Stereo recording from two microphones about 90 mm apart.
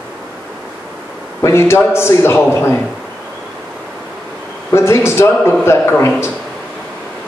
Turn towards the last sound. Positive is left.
turn(degrees=30)  # may be behind; listen again after turning